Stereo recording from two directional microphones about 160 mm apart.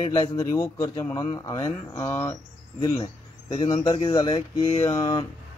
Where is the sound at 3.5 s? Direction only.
30° left (ahead or behind).